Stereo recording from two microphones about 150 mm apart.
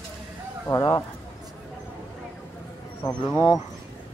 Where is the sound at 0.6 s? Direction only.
25° left (ahead or behind).